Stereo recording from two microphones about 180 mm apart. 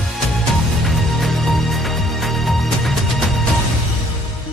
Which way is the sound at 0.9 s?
Centre (ahead or behind).